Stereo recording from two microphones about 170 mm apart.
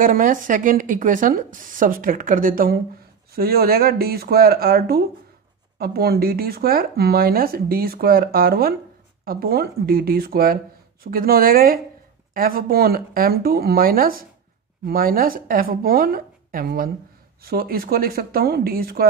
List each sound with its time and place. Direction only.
0.0 s a woman's voice: 55° right (ahead or behind)